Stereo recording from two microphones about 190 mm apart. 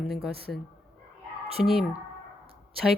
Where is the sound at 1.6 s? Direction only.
Centre (ahead or behind).